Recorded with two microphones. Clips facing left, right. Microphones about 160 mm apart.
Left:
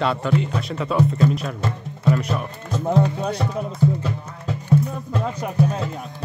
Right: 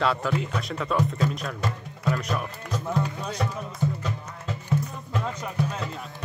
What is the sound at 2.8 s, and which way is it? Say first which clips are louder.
Speech: left 9 dB; 60° left (ahead or behind).